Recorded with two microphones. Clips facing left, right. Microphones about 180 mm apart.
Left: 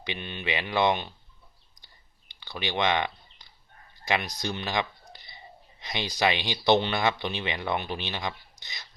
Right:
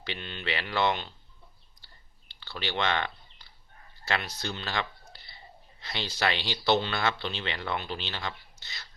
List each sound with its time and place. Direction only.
0.0 s speech: 15° left (ahead or behind)
1.8 s a sound: 15° left (ahead or behind)
4.0 s speech: 15° left (ahead or behind)